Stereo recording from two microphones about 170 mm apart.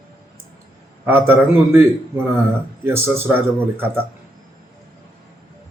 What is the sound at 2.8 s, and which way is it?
A man's voice, 15° right (ahead or behind).